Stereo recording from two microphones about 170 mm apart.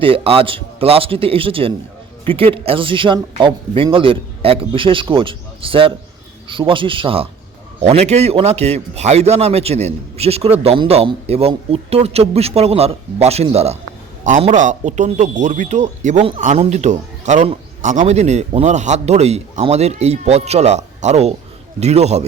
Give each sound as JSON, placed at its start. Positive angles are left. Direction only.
{"t": 0.0, "sound": "a man's voice", "side_deg": -30}